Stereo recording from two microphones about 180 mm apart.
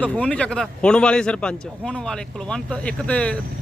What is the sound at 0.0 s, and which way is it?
A man's voice, 5° left (ahead or behind).